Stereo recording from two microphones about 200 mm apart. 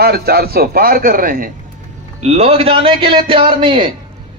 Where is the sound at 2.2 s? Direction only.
30° right (ahead or behind).